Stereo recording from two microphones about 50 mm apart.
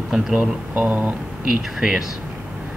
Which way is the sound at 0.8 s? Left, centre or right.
Right.